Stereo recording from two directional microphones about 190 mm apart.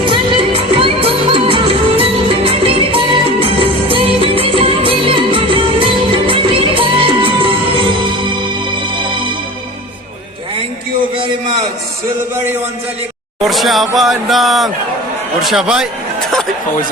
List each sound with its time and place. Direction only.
0.0 s music: 25° right (ahead or behind)
13.4 s speech: centre (ahead or behind)